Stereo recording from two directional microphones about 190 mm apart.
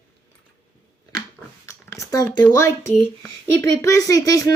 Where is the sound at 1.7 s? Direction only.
15° left (ahead or behind).